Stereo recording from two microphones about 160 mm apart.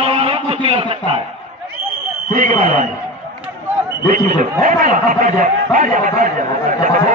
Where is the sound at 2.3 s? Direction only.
50° right (ahead or behind).